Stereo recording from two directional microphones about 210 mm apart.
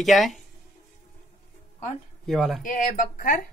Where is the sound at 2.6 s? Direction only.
40° left (ahead or behind).